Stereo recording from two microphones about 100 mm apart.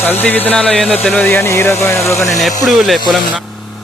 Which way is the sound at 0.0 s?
20° left (ahead or behind).